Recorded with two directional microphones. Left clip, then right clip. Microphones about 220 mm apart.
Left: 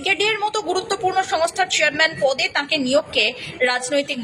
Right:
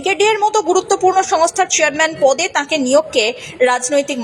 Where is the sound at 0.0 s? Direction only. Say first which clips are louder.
Right 6 dB; 15° right (ahead or behind).